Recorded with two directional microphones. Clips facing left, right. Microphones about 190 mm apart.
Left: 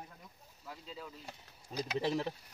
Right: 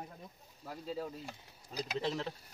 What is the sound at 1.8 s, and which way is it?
Speech, 10° left (ahead or behind).